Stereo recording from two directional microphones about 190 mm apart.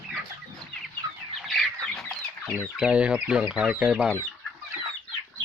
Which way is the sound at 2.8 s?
5° right (ahead or behind).